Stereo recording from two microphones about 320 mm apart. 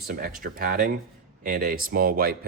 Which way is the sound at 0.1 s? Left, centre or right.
Right.